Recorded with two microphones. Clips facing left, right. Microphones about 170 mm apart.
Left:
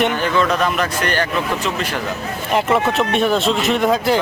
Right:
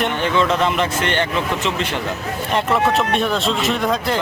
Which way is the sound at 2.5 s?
5° left (ahead or behind).